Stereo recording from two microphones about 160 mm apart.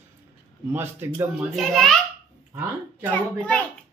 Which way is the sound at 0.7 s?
15° right (ahead or behind).